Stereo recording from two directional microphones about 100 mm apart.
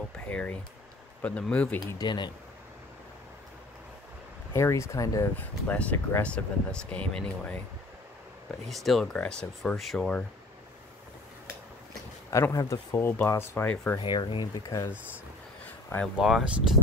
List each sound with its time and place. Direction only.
0.3 s speech: 10° left (ahead or behind)
2.0 s speech: 50° left (ahead or behind)
4.6 s speech: 30° left (ahead or behind)
5.3 s speech: 15° left (ahead or behind)
8.6 s speech: centre (ahead or behind)
12.3 s speech: 30° left (ahead or behind)
13.9 s speech: 50° left (ahead or behind)
15.6 s a sound: 15° left (ahead or behind)
16.2 s speech: 5° right (ahead or behind)